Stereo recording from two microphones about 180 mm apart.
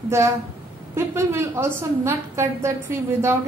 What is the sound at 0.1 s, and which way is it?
A woman's voice, 15° right (ahead or behind).